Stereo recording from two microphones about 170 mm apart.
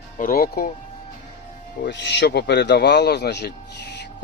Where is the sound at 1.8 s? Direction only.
85° left.